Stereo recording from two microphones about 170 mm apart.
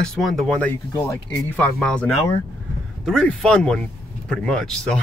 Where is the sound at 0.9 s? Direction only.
15° left (ahead or behind).